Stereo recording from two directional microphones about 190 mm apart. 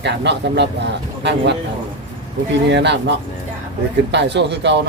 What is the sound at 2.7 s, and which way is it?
Speech, 65° right (ahead or behind).